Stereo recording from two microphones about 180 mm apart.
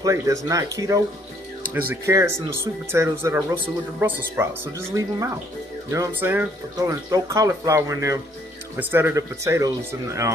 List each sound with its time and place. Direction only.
0.0 s speech: 20° right (ahead or behind)